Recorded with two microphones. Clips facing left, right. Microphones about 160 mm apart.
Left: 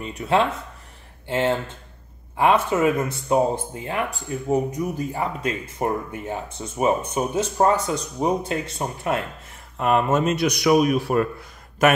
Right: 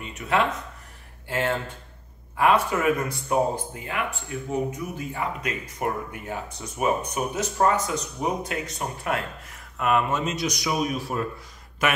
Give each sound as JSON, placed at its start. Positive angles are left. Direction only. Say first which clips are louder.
{"t": 0.0, "sound": "speech", "louder": "left 3 dB", "side_deg": 30}
{"t": 10.1, "sound": "a man's voice", "louder": "left 6 dB", "side_deg": 55}
{"t": 11.8, "sound": "speech", "louder": "left 7 dB", "side_deg": 45}